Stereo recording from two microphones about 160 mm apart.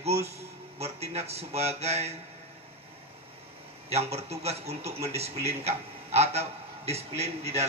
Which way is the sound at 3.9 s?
40° right (ahead or behind).